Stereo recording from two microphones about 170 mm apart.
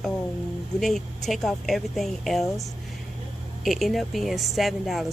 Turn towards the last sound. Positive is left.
turn(degrees=0)  # may be behind; listen again after turning